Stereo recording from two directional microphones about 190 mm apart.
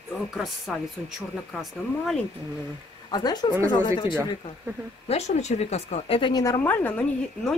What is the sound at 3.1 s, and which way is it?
Speech, 20° left (ahead or behind).